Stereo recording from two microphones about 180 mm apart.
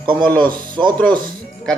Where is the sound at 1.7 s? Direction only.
5° left (ahead or behind).